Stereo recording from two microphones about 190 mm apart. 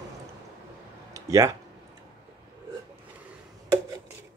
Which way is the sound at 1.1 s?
15° right (ahead or behind).